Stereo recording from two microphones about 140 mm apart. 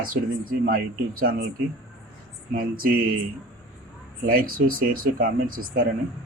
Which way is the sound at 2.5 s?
90° right.